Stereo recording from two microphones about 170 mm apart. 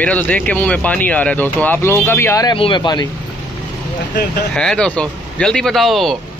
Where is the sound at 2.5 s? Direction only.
30° left (ahead or behind).